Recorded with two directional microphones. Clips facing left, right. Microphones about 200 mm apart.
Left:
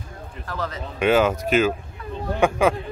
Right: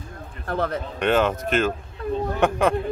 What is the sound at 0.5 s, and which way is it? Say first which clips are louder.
Speech: right 5 dB; 60° right (ahead or behind).